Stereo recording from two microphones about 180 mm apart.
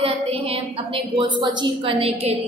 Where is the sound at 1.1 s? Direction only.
25° right (ahead or behind).